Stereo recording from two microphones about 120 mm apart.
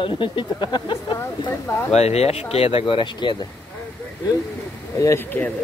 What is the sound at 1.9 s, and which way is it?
Speech, 60° left (ahead or behind).